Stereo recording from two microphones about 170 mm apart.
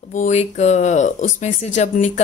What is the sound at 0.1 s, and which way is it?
A woman's voice, 45° left (ahead or behind).